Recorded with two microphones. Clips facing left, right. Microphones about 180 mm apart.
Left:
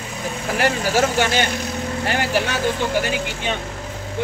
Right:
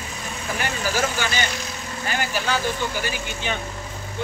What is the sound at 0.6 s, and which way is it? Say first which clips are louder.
Speech: left 6 dB; 75° left (ahead or behind).